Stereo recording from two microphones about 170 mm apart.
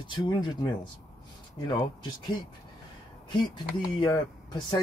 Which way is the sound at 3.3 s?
25° left (ahead or behind).